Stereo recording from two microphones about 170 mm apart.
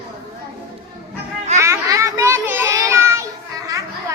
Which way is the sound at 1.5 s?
20° right (ahead or behind).